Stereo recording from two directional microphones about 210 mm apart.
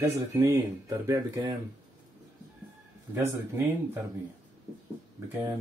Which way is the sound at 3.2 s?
10° right (ahead or behind).